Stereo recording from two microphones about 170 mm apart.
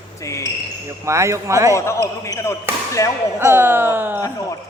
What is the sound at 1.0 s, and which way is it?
Speech, 15° right (ahead or behind).